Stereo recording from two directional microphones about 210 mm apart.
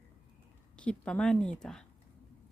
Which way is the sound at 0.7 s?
5° left (ahead or behind).